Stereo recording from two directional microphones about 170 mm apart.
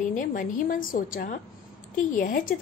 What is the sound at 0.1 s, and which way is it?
A woman's voice, 50° left (ahead or behind).